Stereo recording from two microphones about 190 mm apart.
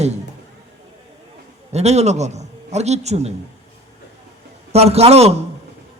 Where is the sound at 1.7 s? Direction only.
35° right (ahead or behind).